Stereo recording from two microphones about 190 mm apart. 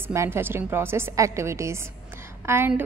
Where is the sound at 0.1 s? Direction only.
15° right (ahead or behind).